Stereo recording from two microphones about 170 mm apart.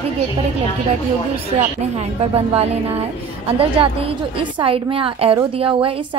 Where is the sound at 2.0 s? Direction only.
35° right (ahead or behind).